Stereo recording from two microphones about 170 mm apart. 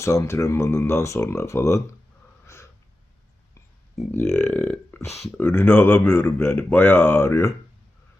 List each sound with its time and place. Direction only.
0.0 s speech: 15° left (ahead or behind)
4.2 s burping: centre (ahead or behind)
5.4 s speech: 10° left (ahead or behind)